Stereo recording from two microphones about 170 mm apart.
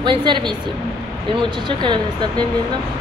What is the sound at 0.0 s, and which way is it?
Speech, 25° right (ahead or behind).